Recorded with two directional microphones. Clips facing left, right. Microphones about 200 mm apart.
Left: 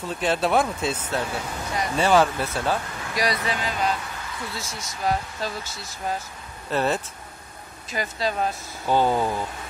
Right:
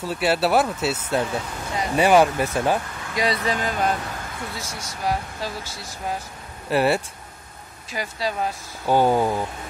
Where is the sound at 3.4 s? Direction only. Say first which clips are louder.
Right 3 dB; 45° right (ahead or behind).